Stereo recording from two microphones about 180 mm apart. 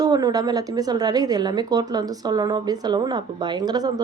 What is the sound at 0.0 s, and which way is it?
A woman's voice, 20° right (ahead or behind).